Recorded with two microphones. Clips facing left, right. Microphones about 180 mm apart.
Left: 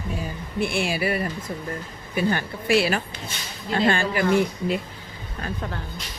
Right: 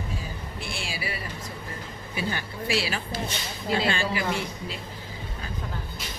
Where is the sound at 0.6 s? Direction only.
60° left (ahead or behind).